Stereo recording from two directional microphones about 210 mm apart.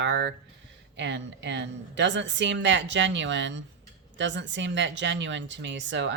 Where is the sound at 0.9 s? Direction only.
60° right (ahead or behind).